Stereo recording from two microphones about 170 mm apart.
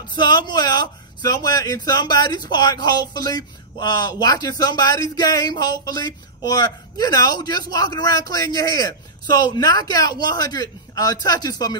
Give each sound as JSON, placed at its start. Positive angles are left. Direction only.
{"t": 0.1, "sound": "speech", "side_deg": 25}